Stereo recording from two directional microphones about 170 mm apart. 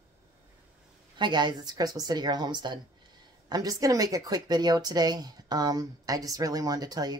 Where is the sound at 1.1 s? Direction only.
25° right (ahead or behind).